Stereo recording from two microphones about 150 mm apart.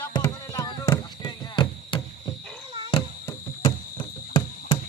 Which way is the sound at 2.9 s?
35° left (ahead or behind).